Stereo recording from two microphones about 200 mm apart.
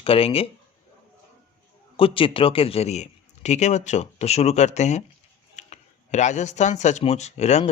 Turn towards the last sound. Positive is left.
turn(degrees=35)  # may be behind; listen again after turning